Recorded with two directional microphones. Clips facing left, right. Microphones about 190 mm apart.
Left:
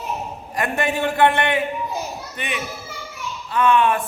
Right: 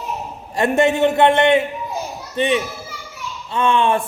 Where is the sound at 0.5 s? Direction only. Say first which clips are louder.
Right 7 dB; 25° right (ahead or behind).